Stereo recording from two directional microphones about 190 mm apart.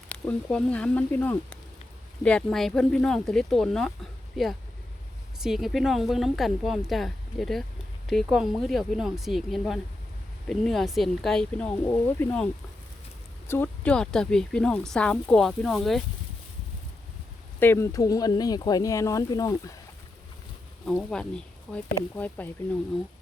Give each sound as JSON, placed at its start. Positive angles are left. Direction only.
{"t": 0.1, "sound": "speech", "side_deg": 5}
{"t": 13.5, "sound": "speech", "side_deg": 10}
{"t": 17.6, "sound": "speech", "side_deg": 15}
{"t": 20.8, "sound": "speech", "side_deg": 5}
{"t": 22.1, "sound": "speech", "side_deg": 10}